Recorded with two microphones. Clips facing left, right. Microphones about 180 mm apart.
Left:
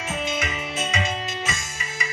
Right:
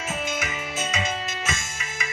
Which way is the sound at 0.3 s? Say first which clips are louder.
Left 2 dB; 5° right (ahead or behind).